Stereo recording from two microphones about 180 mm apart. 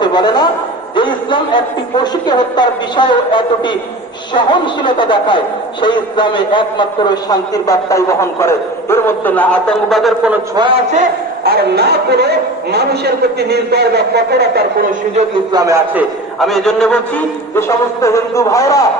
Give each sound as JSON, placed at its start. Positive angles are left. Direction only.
{"t": 0.0, "sound": "a man's voice", "side_deg": 25}
{"t": 10.5, "sound": "a man's voice", "side_deg": -25}
{"t": 11.4, "sound": "a man's voice", "side_deg": -60}
{"t": 15.5, "sound": "a man's voice", "side_deg": -15}
{"t": 16.4, "sound": "a man's voice", "side_deg": 0}
{"t": 17.5, "sound": "a man's voice", "side_deg": 15}